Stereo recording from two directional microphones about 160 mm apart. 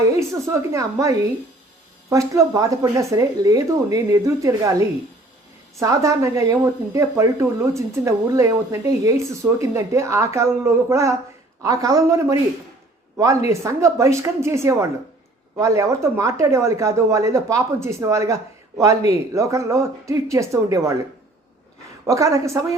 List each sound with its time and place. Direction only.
0.2 s speech: 20° right (ahead or behind)
22.0 s speech: 20° right (ahead or behind)